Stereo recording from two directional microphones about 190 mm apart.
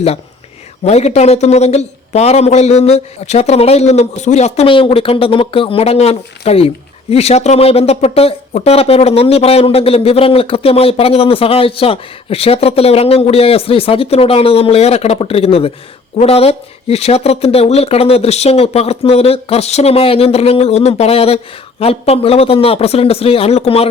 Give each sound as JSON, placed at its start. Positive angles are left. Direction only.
{"t": 0.9, "sound": "speech", "side_deg": 35}